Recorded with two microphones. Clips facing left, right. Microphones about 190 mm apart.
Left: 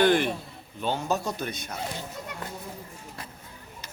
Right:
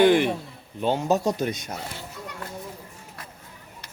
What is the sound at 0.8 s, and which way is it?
Speech, 30° right (ahead or behind).